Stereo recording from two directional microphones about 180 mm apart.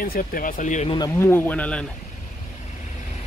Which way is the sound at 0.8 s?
20° left (ahead or behind).